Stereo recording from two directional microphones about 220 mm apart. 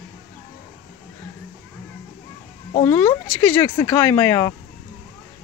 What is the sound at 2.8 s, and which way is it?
Speech, 10° left (ahead or behind).